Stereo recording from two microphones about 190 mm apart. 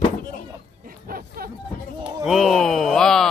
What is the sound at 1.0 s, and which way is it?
Speech, 50° right (ahead or behind).